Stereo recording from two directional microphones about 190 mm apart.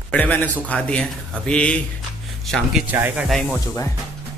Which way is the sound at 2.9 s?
10° right (ahead or behind).